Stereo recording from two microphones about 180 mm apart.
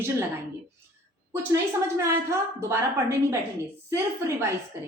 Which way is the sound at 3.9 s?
15° right (ahead or behind).